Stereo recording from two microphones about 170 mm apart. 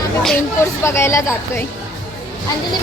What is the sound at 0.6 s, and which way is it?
A woman's voice, 15° left (ahead or behind).